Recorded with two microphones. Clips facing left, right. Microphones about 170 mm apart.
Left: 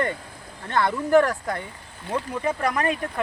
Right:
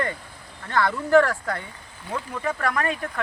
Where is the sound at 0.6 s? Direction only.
20° left (ahead or behind).